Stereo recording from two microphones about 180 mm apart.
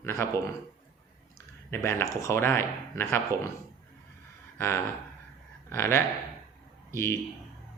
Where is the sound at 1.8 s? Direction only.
15° left (ahead or behind).